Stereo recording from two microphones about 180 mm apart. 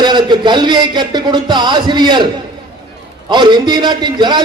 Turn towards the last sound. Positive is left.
turn(degrees=-25)  # may be behind; listen again after turning